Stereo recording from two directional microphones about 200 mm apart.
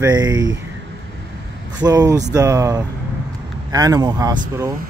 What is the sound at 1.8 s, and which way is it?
Speech, 20° right (ahead or behind).